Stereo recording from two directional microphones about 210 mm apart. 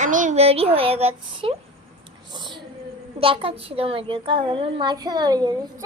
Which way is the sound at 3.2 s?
25° right (ahead or behind).